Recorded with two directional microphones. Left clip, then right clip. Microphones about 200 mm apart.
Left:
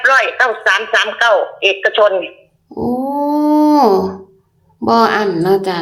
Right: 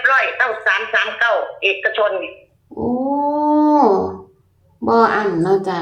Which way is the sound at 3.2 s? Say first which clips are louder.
Left 3 dB; 40° left (ahead or behind).